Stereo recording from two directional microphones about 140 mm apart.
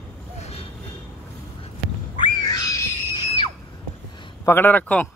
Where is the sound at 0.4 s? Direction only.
45° left (ahead or behind).